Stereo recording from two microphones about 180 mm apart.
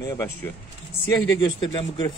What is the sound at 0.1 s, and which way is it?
Speech, 15° left (ahead or behind).